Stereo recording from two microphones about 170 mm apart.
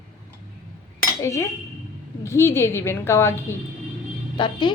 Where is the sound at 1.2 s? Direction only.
15° left (ahead or behind).